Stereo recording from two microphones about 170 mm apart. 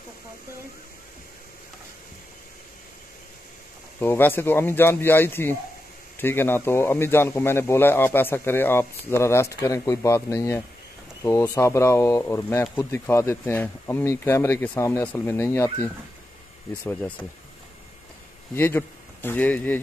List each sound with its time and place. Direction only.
4.0 s speech: 10° left (ahead or behind)
18.5 s speech: 15° left (ahead or behind)